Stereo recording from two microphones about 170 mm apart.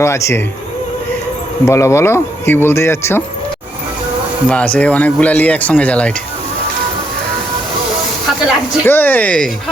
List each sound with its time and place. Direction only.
0.0 s speech: 15° left (ahead or behind)
1.6 s speech: 15° left (ahead or behind)
4.4 s speech: 10° left (ahead or behind)
8.9 s speech: 10° left (ahead or behind)